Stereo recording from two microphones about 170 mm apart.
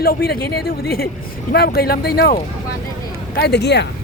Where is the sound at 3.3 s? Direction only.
75° left (ahead or behind).